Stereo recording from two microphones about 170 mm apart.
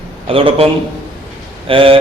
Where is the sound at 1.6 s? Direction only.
30° right (ahead or behind).